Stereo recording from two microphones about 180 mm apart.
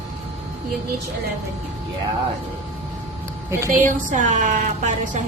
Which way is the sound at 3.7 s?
45° right (ahead or behind).